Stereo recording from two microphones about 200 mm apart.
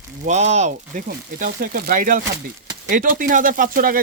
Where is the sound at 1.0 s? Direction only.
45° right (ahead or behind).